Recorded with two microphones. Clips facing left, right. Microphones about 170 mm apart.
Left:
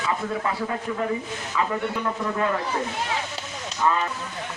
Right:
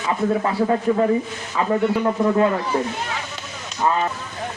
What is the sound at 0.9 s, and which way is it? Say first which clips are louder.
Speech: right 10 dB; 40° right (ahead or behind).